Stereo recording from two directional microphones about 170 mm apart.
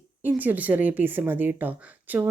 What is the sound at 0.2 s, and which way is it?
Speech, 10° right (ahead or behind).